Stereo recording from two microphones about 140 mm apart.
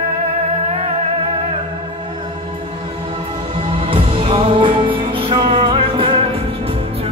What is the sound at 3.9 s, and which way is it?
Music, 40° right (ahead or behind).